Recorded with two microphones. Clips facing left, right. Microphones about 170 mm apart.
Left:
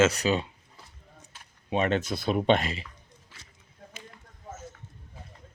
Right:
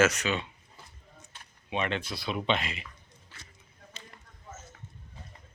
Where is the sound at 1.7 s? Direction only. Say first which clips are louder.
Left 6 dB; 40° left (ahead or behind).